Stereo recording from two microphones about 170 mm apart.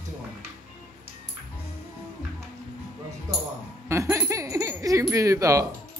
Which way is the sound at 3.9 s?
15° right (ahead or behind).